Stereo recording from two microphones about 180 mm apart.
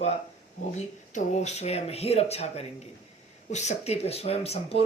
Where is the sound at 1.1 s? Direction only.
40° left (ahead or behind).